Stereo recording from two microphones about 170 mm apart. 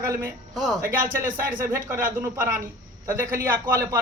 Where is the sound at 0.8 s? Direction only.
55° right (ahead or behind).